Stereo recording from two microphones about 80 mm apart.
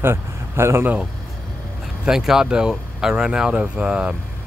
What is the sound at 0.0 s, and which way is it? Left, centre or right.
Speech, right.